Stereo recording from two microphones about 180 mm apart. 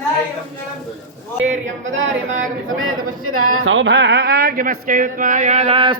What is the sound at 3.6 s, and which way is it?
Speech, 90° right.